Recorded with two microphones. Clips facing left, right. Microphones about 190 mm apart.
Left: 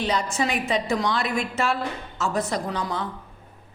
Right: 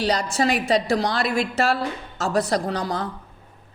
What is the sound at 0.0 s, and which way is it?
A woman's voice, 35° right (ahead or behind).